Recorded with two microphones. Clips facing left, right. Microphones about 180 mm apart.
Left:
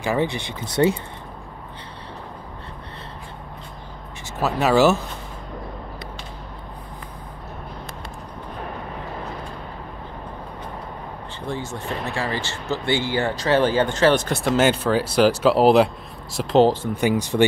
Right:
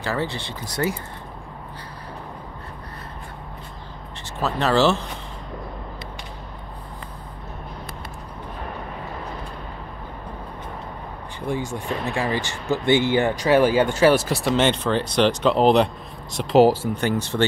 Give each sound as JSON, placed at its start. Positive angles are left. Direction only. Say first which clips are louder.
{"t": 0.0, "sound": "speech", "louder": "left 4 dB", "side_deg": 15}
{"t": 4.4, "sound": "speech", "louder": "left 2 dB", "side_deg": 10}
{"t": 11.4, "sound": "speech", "louder": "right 3 dB", "side_deg": -15}
{"t": 16.9, "sound": "speech", "louder": "left 3 dB", "side_deg": 10}